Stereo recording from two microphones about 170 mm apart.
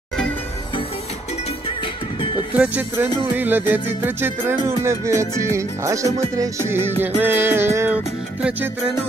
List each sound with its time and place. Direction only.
2.6 s music: 10° right (ahead or behind)